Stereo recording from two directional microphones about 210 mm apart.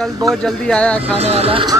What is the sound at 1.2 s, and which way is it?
Speech, 30° right (ahead or behind).